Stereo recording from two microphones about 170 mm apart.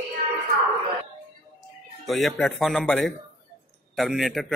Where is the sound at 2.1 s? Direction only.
Centre (ahead or behind).